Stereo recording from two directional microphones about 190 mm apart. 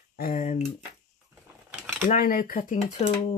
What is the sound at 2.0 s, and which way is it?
Speech, 45° left (ahead or behind).